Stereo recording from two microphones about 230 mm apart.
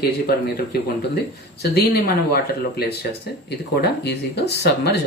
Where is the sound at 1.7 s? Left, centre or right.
Left.